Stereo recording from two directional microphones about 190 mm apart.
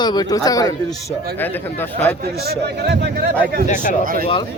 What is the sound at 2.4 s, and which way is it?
Speech, 60° right (ahead or behind).